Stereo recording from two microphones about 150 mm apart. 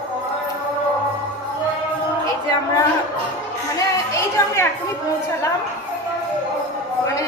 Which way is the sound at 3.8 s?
20° left (ahead or behind).